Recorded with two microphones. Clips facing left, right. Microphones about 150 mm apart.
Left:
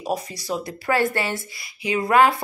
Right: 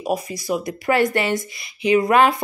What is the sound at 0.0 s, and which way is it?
Speech, 10° right (ahead or behind).